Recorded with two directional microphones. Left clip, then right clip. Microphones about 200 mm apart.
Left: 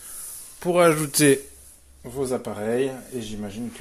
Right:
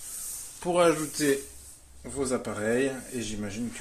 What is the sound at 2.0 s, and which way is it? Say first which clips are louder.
Speech: left 3 dB; 25° left (ahead or behind).